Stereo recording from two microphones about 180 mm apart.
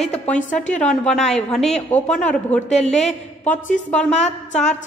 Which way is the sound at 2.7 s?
40° left (ahead or behind).